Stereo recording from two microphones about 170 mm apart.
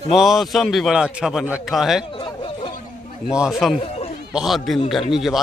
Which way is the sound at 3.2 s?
5° right (ahead or behind).